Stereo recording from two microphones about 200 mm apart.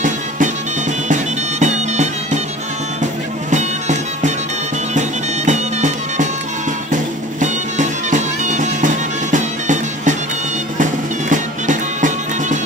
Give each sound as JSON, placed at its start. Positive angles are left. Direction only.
{"t": 1.0, "sound": "music", "side_deg": -35}
{"t": 3.4, "sound": "music", "side_deg": -35}